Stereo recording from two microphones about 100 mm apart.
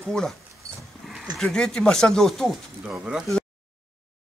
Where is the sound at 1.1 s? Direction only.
5° right (ahead or behind).